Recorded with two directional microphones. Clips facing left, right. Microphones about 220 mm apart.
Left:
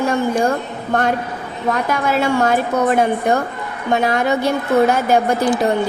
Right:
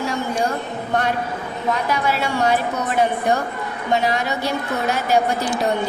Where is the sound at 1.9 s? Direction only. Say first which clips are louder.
Left 4 dB; 50° left (ahead or behind).